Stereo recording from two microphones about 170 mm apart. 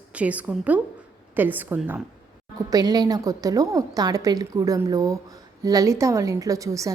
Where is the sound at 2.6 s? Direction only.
25° right (ahead or behind).